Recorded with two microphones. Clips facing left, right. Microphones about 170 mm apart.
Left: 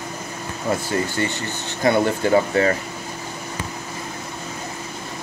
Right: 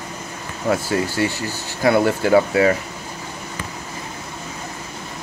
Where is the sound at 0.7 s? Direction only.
5° right (ahead or behind).